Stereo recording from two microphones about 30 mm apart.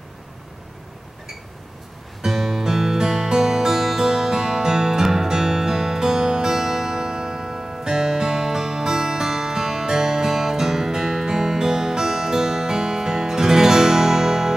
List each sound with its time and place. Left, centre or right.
2.2 s music: centre